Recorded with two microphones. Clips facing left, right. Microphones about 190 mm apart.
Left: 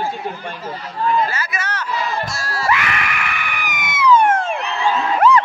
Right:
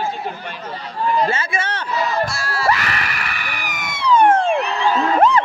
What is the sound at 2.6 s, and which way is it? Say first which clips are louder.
Screaming: even; 35° right (ahead or behind).